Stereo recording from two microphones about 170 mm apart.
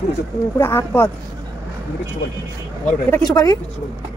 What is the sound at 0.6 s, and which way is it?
Speech, 15° left (ahead or behind).